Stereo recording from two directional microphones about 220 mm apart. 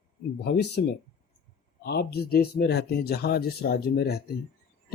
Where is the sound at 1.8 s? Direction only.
45° left (ahead or behind).